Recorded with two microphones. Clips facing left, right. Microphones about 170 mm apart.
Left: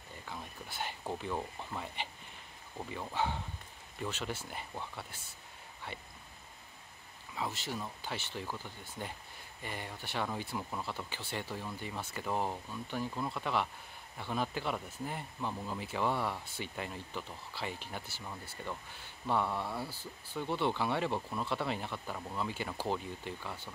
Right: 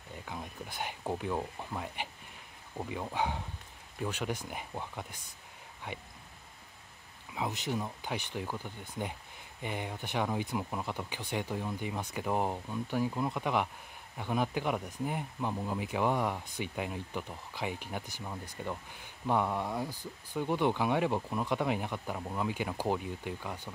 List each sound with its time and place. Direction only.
0.1 s speech: 15° right (ahead or behind)
7.3 s speech: 15° right (ahead or behind)